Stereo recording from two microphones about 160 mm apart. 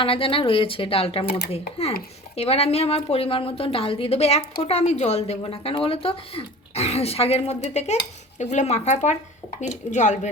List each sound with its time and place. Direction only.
0.0 s a woman's voice: 35° left (ahead or behind)